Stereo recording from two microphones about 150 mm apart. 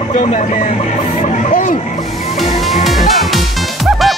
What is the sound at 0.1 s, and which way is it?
Speech, 55° left (ahead or behind).